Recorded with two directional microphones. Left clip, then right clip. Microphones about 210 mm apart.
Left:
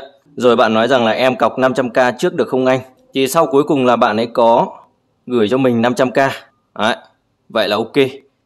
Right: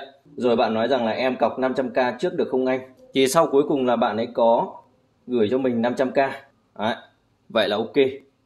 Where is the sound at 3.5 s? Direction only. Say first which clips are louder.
Left 7 dB; 30° left (ahead or behind).